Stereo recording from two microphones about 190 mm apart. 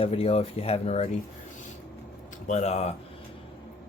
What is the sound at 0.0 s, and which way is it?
Speech, 30° left (ahead or behind).